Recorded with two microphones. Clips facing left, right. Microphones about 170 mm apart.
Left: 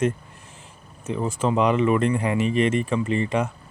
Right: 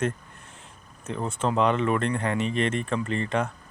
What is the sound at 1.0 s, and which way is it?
Speech, 5° left (ahead or behind).